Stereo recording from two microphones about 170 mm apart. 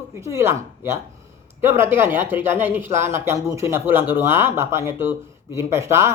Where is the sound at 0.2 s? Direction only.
15° right (ahead or behind).